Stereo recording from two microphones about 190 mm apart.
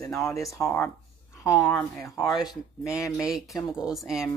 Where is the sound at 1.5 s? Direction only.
5° left (ahead or behind).